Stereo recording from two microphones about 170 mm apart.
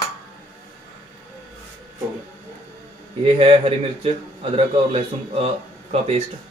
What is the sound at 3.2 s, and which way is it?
A man's voice, 30° right (ahead or behind).